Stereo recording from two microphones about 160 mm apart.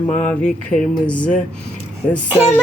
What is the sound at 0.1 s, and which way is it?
Music, 5° left (ahead or behind).